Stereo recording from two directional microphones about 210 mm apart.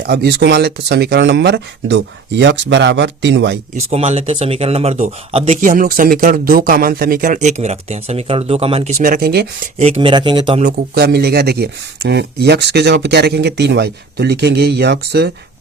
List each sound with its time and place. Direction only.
0.1 s speech: 50° right (ahead or behind)
3.8 s speech: 30° right (ahead or behind)
9.0 s speech: 45° right (ahead or behind)
9.7 s speech: 30° right (ahead or behind)
10.9 s speech: 50° right (ahead or behind)